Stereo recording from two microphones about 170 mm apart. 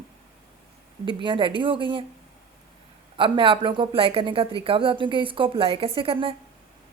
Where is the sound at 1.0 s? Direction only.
30° right (ahead or behind).